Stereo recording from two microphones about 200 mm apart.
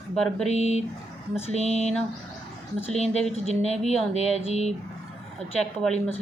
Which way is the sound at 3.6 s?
30° left (ahead or behind).